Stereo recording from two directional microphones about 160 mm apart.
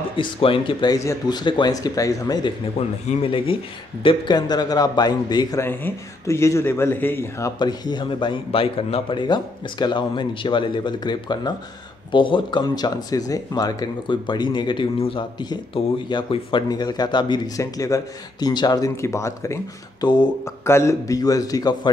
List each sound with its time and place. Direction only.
0.1 s speech: 35° left (ahead or behind)
5.6 s speech: 15° left (ahead or behind)